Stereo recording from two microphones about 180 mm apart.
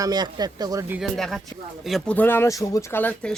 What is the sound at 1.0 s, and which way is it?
Speech, centre (ahead or behind).